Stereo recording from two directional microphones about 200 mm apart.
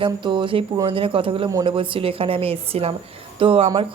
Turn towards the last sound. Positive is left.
turn(degrees=-25)  # may be behind; listen again after turning